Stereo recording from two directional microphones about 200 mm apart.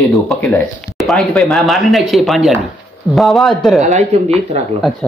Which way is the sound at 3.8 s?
35° right (ahead or behind).